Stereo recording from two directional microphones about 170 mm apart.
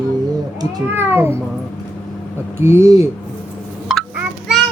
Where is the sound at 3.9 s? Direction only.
Centre (ahead or behind).